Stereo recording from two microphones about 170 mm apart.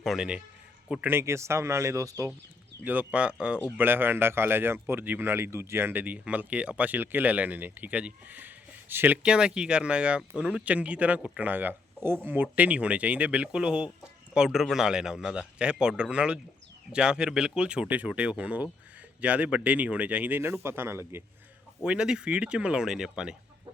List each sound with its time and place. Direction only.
0.0 s speech: centre (ahead or behind)